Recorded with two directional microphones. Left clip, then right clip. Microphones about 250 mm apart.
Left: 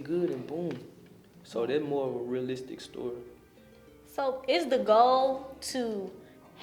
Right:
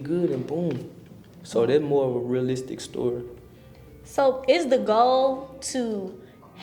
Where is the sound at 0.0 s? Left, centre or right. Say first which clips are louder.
Right 5 dB; right.